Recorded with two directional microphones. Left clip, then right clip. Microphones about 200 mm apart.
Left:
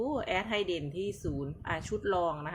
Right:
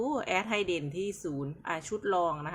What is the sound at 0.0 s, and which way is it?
Speech, 15° right (ahead or behind).